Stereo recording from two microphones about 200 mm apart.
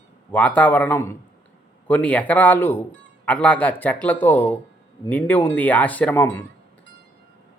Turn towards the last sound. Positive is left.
turn(degrees=10)  # may be behind; listen again after turning